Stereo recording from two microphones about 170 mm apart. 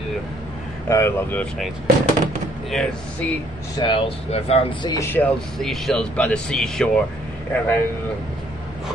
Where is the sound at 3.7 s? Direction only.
30° left (ahead or behind).